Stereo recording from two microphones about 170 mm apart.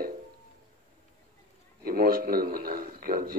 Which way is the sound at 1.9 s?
60° right (ahead or behind).